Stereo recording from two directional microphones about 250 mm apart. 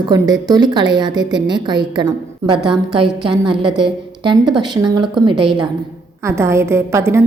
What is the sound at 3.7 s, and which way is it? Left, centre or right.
A woman's voice, centre.